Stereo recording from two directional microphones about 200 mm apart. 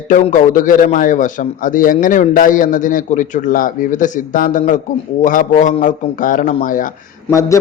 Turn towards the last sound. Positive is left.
turn(degrees=15)  # may be behind; listen again after turning